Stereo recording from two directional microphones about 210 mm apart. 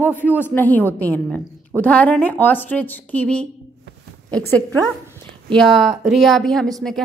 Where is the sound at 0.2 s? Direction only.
10° left (ahead or behind).